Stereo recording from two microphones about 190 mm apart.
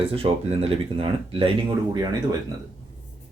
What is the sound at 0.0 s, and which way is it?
Speech, 30° right (ahead or behind).